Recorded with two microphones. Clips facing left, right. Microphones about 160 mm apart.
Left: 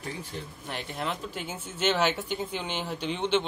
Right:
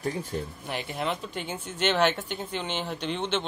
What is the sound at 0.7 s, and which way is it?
Speech, 5° right (ahead or behind).